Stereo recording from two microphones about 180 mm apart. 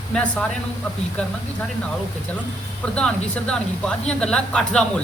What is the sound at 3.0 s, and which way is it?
A man's voice, 5° left (ahead or behind).